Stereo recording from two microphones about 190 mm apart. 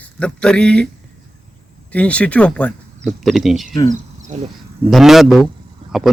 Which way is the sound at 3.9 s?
40° right (ahead or behind).